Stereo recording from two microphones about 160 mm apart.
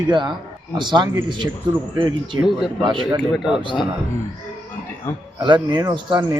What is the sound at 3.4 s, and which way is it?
Speech, 5° right (ahead or behind).